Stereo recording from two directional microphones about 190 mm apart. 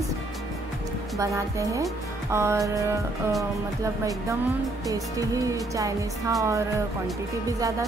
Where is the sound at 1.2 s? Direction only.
15° right (ahead or behind).